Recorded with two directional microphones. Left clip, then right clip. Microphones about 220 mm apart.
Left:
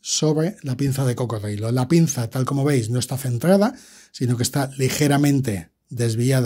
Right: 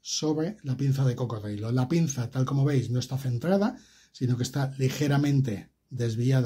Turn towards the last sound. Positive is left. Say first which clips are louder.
# left 7 dB
turn(degrees=45)  # may be behind; listen again after turning